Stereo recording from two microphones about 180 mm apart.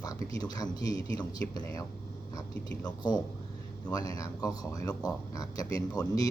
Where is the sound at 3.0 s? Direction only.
25° left (ahead or behind).